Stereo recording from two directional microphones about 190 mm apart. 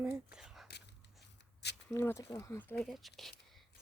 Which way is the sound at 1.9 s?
15° left (ahead or behind).